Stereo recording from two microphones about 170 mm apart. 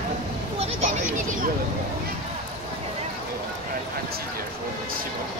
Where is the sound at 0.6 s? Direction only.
40° right (ahead or behind).